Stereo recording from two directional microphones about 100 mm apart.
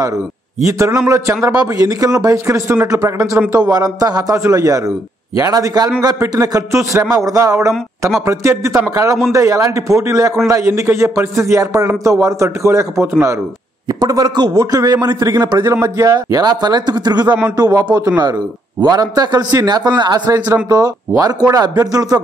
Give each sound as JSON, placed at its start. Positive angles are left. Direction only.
{"t": 0.7, "sound": "a man's voice", "side_deg": -30}
{"t": 13.8, "sound": "a man's voice", "side_deg": -40}